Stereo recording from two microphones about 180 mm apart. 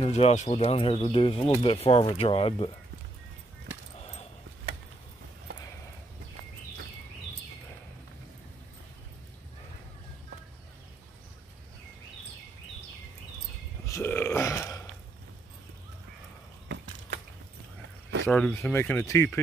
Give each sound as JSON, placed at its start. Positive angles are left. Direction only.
{"t": 0.0, "sound": "speech", "side_deg": 35}
{"t": 13.8, "sound": "burping", "side_deg": 15}
{"t": 18.2, "sound": "speech", "side_deg": 10}